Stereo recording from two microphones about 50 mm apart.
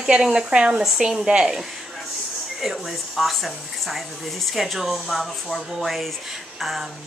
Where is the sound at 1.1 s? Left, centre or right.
Centre.